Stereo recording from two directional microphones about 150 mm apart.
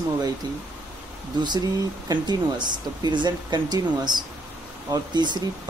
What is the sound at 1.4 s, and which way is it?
Speech, 30° right (ahead or behind).